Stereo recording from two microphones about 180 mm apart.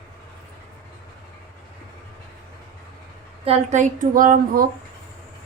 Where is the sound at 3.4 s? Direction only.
35° right (ahead or behind).